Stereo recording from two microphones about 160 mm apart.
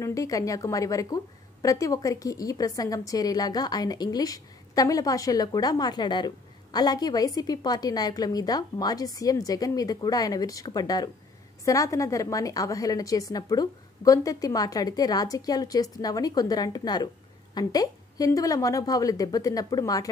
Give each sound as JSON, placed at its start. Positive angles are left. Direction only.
{"t": 0.0, "sound": "a woman's voice", "side_deg": 20}